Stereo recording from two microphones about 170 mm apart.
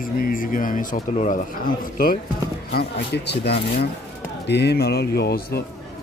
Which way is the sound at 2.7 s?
70° left (ahead or behind).